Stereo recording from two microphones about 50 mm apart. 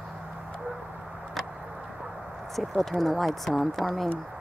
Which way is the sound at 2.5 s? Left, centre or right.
Centre.